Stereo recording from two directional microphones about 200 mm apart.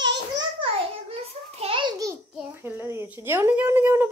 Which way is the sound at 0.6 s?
30° right (ahead or behind).